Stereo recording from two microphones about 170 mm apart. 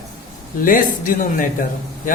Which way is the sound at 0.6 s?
55° left (ahead or behind).